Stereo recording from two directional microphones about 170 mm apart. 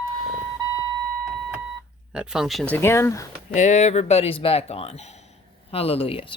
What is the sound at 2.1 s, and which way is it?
Speech, 5° right (ahead or behind).